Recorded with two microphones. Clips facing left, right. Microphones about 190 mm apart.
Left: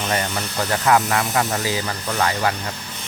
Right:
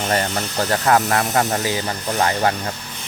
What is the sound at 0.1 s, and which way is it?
Speech, 35° right (ahead or behind).